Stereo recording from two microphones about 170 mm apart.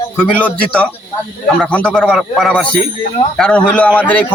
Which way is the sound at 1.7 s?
5° left (ahead or behind).